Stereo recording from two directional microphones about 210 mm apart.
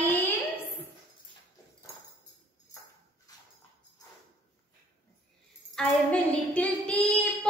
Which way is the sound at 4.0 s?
15° left (ahead or behind).